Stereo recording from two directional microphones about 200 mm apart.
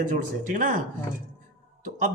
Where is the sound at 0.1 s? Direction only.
40° right (ahead or behind).